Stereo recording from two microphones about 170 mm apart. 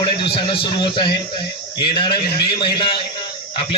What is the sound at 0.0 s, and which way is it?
A man's voice, 30° left (ahead or behind).